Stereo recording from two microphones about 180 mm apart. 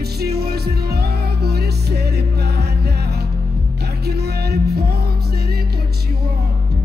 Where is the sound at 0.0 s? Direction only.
60° right (ahead or behind).